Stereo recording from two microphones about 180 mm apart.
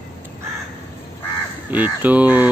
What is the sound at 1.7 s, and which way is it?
Speech, 10° right (ahead or behind).